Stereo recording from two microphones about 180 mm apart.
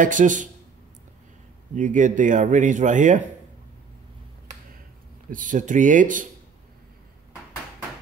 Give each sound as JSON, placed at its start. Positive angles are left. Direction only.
{"t": 0.0, "sound": "speech", "side_deg": -45}
{"t": 1.8, "sound": "speech", "side_deg": -45}
{"t": 5.3, "sound": "speech", "side_deg": -45}